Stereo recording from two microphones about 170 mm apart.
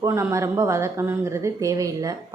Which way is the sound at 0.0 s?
15° right (ahead or behind).